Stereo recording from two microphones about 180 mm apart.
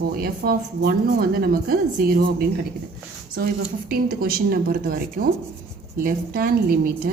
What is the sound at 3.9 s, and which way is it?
A woman's voice, 55° right (ahead or behind).